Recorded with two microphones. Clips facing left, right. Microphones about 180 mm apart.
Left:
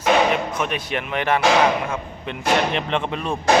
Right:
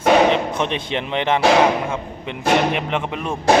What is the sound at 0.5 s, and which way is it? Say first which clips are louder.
Speech: right 2 dB; 25° right (ahead or behind).